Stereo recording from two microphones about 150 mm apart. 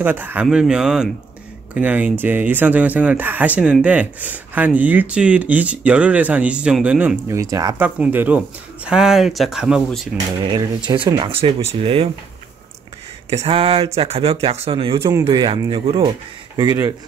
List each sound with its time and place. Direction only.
0.0 s speech: 10° right (ahead or behind)
7.8 s speech: 10° right (ahead or behind)
10.9 s speech: 30° right (ahead or behind)
13.3 s speech: 40° right (ahead or behind); by 16.9 s 25° right (ahead or behind)